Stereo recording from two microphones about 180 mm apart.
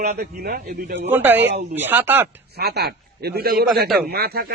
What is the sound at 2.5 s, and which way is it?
A man's voice, 65° right (ahead or behind).